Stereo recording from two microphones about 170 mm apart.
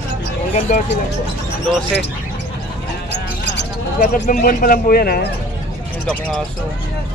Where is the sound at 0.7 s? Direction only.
50° left (ahead or behind).